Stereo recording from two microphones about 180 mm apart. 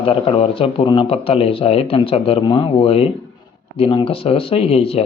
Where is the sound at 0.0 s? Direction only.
30° left (ahead or behind).